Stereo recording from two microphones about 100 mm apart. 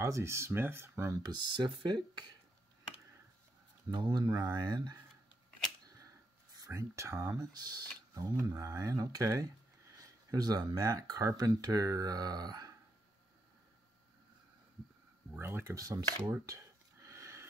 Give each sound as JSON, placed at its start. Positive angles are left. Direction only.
{"t": 0.0, "sound": "speech", "side_deg": -30}
{"t": 1.2, "sound": "speech", "side_deg": -50}
{"t": 3.9, "sound": "speech", "side_deg": -50}
{"t": 6.5, "sound": "speech", "side_deg": -35}
{"t": 7.5, "sound": "speech", "side_deg": -40}
{"t": 9.9, "sound": "a sound", "side_deg": -40}
{"t": 10.9, "sound": "speech", "side_deg": -35}
{"t": 15.3, "sound": "speech", "side_deg": -20}
{"t": 15.7, "sound": "speech", "side_deg": -35}
{"t": 16.4, "sound": "a sound", "side_deg": -30}